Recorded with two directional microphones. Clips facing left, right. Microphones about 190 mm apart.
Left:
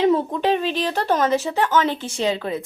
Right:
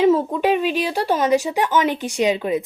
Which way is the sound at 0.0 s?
10° right (ahead or behind).